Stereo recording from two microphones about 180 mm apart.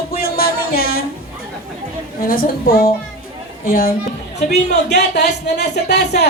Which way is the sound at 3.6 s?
55° left (ahead or behind).